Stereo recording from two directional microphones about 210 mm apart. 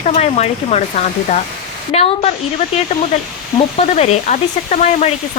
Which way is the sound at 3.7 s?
30° left (ahead or behind).